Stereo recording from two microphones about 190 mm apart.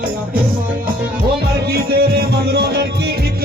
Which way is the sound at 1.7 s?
55° right (ahead or behind).